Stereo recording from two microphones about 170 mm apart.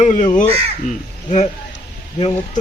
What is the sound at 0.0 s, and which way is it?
Speech, 45° left (ahead or behind).